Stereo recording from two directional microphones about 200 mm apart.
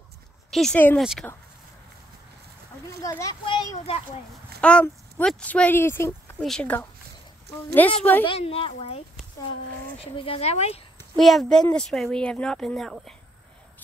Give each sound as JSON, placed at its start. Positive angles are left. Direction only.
{"t": 0.5, "sound": "speech", "side_deg": 0}
{"t": 3.0, "sound": "a child's voice", "side_deg": 15}
{"t": 4.6, "sound": "speech", "side_deg": 5}
{"t": 8.0, "sound": "speech", "side_deg": 10}
{"t": 8.3, "sound": "a child's voice", "side_deg": 30}
{"t": 11.1, "sound": "speech", "side_deg": 0}